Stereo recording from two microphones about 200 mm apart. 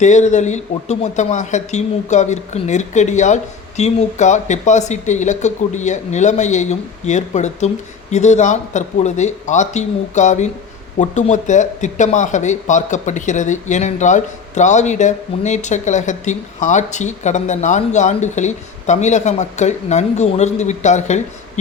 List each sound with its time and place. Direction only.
0.0 s speech: 35° left (ahead or behind)